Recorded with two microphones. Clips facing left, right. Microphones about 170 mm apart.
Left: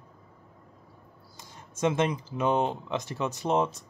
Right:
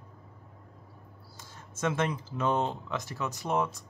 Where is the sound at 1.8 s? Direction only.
15° left (ahead or behind).